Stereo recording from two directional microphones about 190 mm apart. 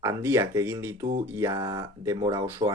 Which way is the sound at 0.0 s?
15° right (ahead or behind).